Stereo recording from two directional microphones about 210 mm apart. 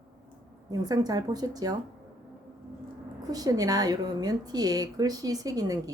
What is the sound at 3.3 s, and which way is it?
A woman's voice, 15° right (ahead or behind).